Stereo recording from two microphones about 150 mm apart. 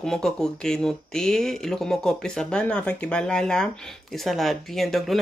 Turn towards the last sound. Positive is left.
turn(degrees=0)  # may be behind; listen again after turning